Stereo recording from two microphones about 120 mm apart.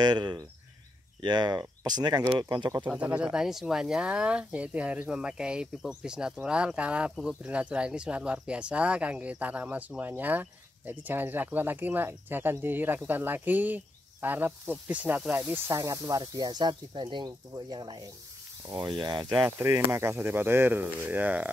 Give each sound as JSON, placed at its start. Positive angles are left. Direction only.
{"t": 0.0, "sound": "speech", "side_deg": -35}
{"t": 2.9, "sound": "speech", "side_deg": -10}
{"t": 19.3, "sound": "speech", "side_deg": -15}